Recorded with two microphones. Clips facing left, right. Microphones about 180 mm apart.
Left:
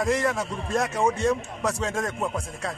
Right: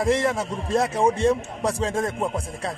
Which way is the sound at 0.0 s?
30° right (ahead or behind).